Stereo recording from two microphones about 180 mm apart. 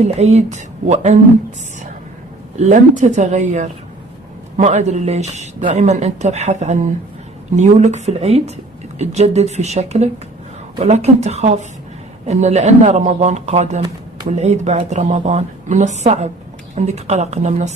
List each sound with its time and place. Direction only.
0.0 s speech: 35° right (ahead or behind)
2.5 s speech: 40° right (ahead or behind)